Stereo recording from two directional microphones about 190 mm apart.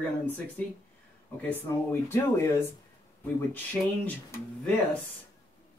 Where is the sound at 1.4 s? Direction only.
10° left (ahead or behind).